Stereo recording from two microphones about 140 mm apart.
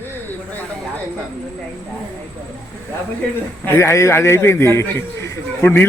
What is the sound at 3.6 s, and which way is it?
A man's voice, 20° left (ahead or behind).